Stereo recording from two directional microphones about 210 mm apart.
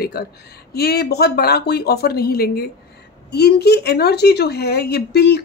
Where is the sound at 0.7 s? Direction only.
50° left (ahead or behind).